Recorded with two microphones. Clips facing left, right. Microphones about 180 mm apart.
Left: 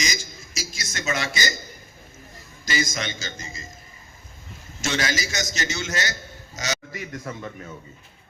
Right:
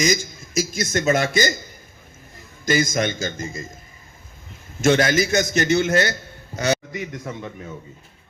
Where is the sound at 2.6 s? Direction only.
55° right (ahead or behind).